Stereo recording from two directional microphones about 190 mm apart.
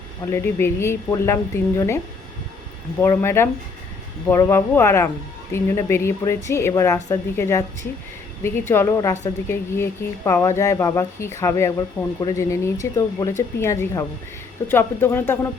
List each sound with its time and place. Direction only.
0.3 s speech: 15° left (ahead or behind)
3.0 s speech: 15° left (ahead or behind)